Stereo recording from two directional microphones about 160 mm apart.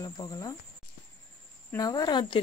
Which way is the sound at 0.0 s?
20° left (ahead or behind).